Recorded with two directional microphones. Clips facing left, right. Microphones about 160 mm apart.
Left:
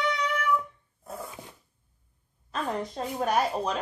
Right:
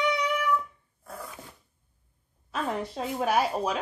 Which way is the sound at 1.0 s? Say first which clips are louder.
Left 2 dB; 25° left (ahead or behind).